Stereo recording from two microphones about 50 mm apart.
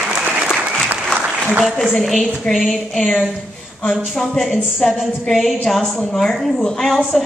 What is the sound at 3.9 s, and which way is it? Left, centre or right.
A woman's voice, centre.